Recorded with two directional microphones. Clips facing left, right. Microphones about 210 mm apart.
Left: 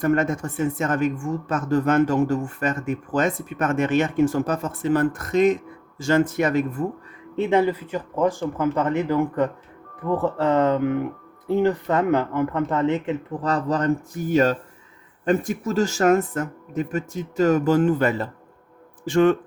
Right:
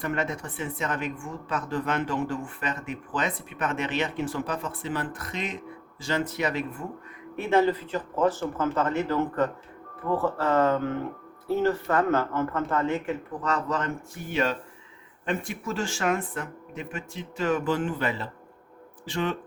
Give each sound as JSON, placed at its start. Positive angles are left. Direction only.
{"t": 0.0, "sound": "speech", "side_deg": 45}
{"t": 7.3, "sound": "speech", "side_deg": 20}
{"t": 13.4, "sound": "speech", "side_deg": 35}